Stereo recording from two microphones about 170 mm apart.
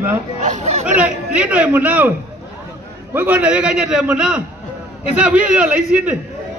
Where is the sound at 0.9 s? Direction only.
5° right (ahead or behind).